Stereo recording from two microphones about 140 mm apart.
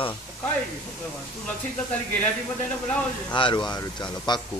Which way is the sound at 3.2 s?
35° left (ahead or behind).